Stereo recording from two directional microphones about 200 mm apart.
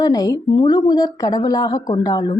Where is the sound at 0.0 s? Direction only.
20° left (ahead or behind).